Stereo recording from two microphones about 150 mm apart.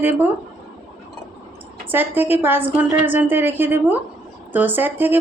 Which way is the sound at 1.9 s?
15° right (ahead or behind).